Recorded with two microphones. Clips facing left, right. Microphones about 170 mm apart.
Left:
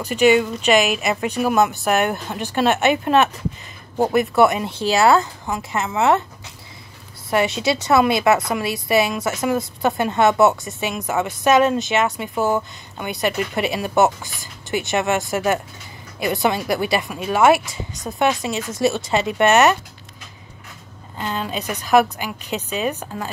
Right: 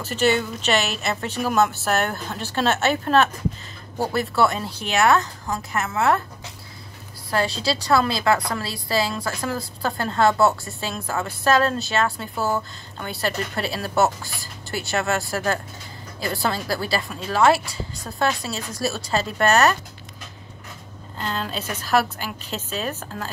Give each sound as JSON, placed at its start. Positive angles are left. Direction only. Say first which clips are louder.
{"t": 0.0, "sound": "a woman's voice", "louder": "left 6 dB", "side_deg": 15}
{"t": 7.2, "sound": "a woman's voice", "louder": "left 4 dB", "side_deg": 20}
{"t": 21.2, "sound": "speech", "louder": "left 3 dB", "side_deg": 10}